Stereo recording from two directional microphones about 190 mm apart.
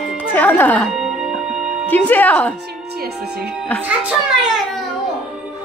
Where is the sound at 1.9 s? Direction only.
10° left (ahead or behind).